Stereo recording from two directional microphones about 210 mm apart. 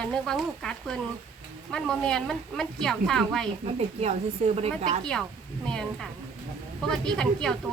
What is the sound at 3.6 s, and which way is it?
Speech, 30° right (ahead or behind).